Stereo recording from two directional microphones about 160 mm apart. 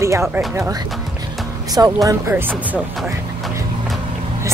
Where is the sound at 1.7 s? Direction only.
25° right (ahead or behind); by 3.9 s centre (ahead or behind).